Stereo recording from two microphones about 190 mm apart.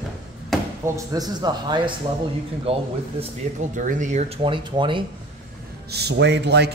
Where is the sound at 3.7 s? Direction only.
40° right (ahead or behind).